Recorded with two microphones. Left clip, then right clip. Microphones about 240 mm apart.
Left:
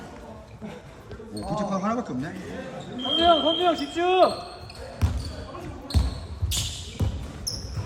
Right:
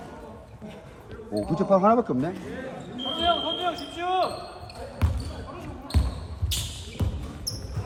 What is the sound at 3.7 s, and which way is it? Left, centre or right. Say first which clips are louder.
Speech: left 5 dB; left.